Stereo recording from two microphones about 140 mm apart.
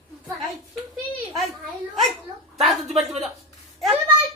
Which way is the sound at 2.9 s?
50° right (ahead or behind).